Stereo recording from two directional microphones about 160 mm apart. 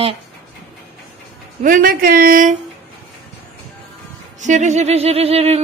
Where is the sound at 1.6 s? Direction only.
60° right (ahead or behind).